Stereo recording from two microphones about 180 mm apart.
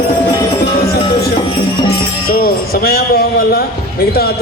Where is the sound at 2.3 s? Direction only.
55° left (ahead or behind).